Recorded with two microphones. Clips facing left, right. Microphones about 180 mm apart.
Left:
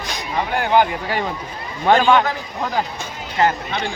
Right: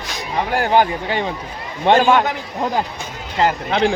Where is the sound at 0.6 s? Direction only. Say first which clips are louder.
Right 1 dB; 40° right (ahead or behind).